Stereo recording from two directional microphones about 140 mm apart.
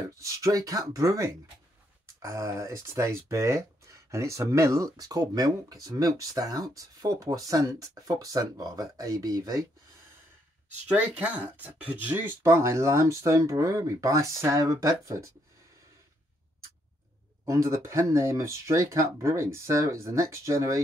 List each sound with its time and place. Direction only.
0.2 s speech: 20° right (ahead or behind)
10.9 s speech: 10° right (ahead or behind)
17.5 s speech: 20° right (ahead or behind)